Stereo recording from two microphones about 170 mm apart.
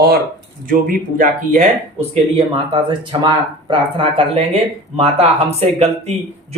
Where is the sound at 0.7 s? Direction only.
55° right (ahead or behind).